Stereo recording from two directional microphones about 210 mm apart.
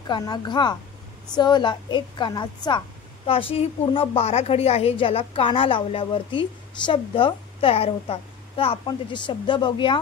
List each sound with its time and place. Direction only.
0.0 s a woman's voice: 20° left (ahead or behind)